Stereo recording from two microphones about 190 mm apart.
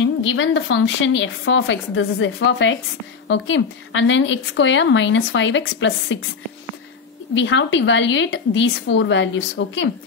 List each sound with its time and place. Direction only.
0.3 s a woman's voice: 90° left
7.3 s a woman's voice: 75° left (ahead or behind)